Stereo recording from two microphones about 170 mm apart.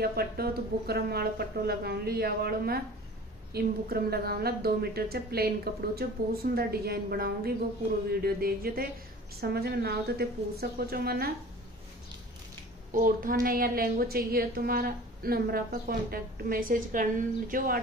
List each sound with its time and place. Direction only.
0.0 s a woman's voice: 65° right (ahead or behind)
12.9 s a woman's voice: 55° right (ahead or behind)